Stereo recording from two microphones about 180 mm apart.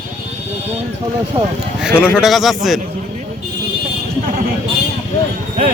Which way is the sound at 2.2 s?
Centre (ahead or behind).